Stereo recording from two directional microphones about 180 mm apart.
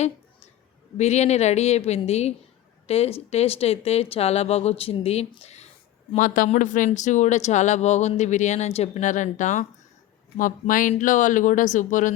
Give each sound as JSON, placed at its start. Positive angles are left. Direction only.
{"t": 0.9, "sound": "speech", "side_deg": 40}
{"t": 6.1, "sound": "speech", "side_deg": 50}